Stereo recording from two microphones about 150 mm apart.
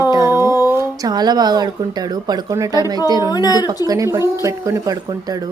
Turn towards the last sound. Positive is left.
turn(degrees=-25)  # may be behind; listen again after turning